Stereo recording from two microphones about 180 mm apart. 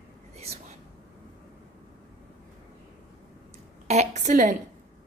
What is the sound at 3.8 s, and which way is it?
Speech, 40° right (ahead or behind).